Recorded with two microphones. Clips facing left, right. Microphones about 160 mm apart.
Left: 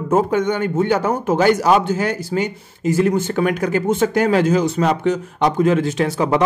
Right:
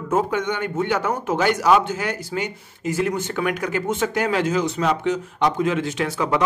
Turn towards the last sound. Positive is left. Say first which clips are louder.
# left 5 dB
turn(degrees=30)  # may be behind; listen again after turning